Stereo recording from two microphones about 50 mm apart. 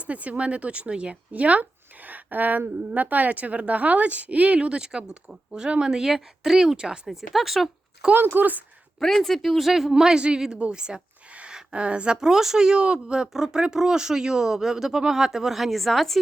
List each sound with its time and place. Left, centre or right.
0.0 s a woman's voice: right; by 7.7 s centre
8.1 s speech: right
9.0 s speech: centre
10.0 s a woman's voice: centre